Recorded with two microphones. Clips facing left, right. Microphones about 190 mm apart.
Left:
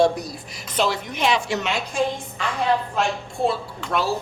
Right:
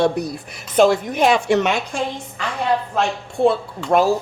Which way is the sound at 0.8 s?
50° right (ahead or behind).